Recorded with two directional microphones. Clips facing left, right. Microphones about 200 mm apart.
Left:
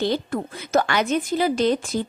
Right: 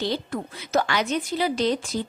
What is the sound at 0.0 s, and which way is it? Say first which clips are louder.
A woman's voice: left 4 dB; 50° left (ahead or behind).